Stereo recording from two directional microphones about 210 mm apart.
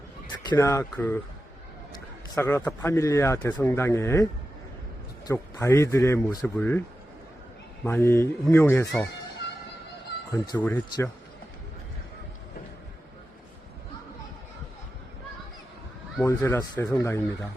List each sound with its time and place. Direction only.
0.3 s a man's voice: 15° left (ahead or behind)
7.9 s a man's voice: 10° left (ahead or behind)
9.4 s music: 55° left (ahead or behind)
10.5 s a man's voice: 10° left (ahead or behind)
16.2 s a man's voice: 15° left (ahead or behind)